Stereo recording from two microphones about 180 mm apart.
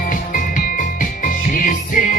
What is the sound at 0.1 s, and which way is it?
Music, 45° left (ahead or behind).